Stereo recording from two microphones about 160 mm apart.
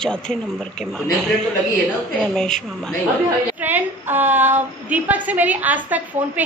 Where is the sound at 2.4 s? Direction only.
5° left (ahead or behind).